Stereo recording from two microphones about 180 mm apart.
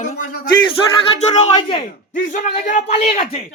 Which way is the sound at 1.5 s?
30° left (ahead or behind).